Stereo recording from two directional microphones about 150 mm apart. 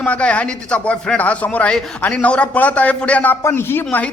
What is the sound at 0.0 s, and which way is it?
Speech, 10° left (ahead or behind).